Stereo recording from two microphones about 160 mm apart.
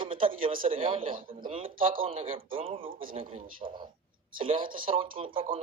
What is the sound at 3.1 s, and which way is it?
Speech, 35° right (ahead or behind).